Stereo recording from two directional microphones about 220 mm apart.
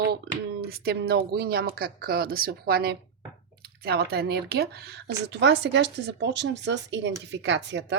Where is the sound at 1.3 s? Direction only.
45° right (ahead or behind).